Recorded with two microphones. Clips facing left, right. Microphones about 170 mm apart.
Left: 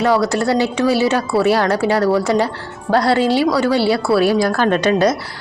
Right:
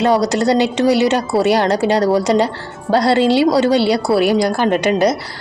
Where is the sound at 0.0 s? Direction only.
20° right (ahead or behind).